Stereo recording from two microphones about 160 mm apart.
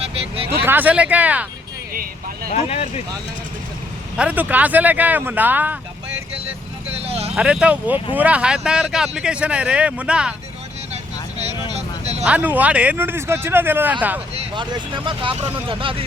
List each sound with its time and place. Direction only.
0.6 s speech: 10° right (ahead or behind)
1.9 s speech: 65° right (ahead or behind)
2.5 s speech: 40° left (ahead or behind)
4.2 s speech: 10° right (ahead or behind)
7.0 s vehicle: 40° right (ahead or behind)
7.3 s speech: 5° right (ahead or behind)
11.7 s vehicle: 40° right (ahead or behind)
12.2 s speech: 10° right (ahead or behind)
14.5 s speech: 30° right (ahead or behind)